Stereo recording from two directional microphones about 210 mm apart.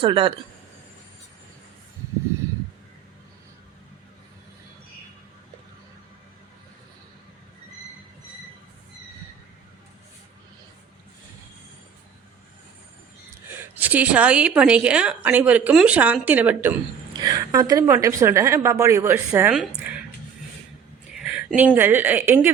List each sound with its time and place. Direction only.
0.0 s speech: 25° right (ahead or behind)
13.5 s a woman's voice: 10° right (ahead or behind)
21.2 s a sound: 5° right (ahead or behind)
21.8 s a woman's voice: 10° right (ahead or behind)